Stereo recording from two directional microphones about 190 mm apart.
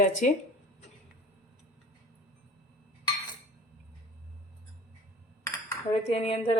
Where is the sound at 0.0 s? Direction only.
40° left (ahead or behind).